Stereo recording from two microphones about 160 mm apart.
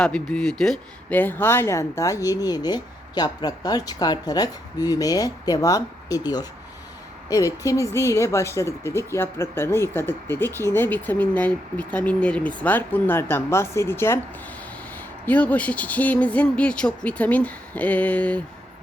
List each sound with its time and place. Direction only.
0.0 s speech: 5° left (ahead or behind)